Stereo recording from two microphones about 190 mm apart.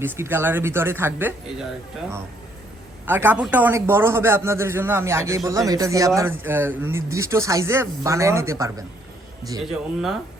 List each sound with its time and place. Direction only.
0.0 s speech: 10° right (ahead or behind)
3.1 s speech: 10° right (ahead or behind)
9.6 s speech: centre (ahead or behind)